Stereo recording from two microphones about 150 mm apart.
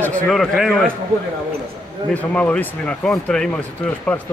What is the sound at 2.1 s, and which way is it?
Speech, 10° left (ahead or behind).